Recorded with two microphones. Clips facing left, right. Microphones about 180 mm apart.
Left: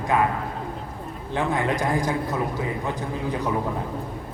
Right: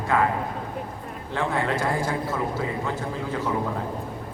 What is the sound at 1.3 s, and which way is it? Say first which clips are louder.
Speech: left 1 dB; 15° left (ahead or behind).